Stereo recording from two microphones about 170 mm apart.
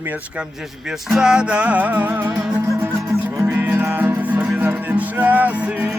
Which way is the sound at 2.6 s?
15° right (ahead or behind).